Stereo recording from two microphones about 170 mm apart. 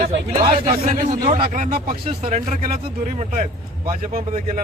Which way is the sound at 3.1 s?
40° right (ahead or behind).